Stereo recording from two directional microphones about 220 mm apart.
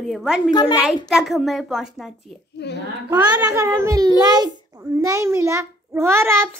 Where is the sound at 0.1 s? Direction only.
Centre (ahead or behind).